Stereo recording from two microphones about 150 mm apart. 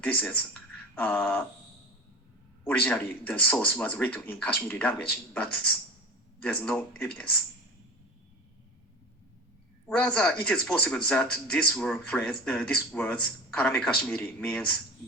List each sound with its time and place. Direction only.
0.0 s speech: 10° left (ahead or behind)
2.6 s speech: 10° left (ahead or behind)
9.8 s speech: 5° left (ahead or behind)